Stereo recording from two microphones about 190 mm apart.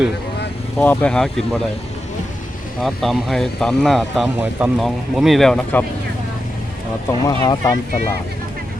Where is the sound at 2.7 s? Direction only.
Centre (ahead or behind).